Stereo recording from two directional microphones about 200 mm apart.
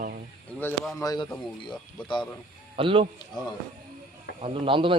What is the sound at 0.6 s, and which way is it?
Speech, 10° left (ahead or behind).